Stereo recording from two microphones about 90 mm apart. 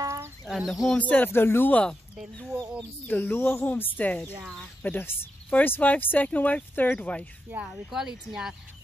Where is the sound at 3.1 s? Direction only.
20° left (ahead or behind).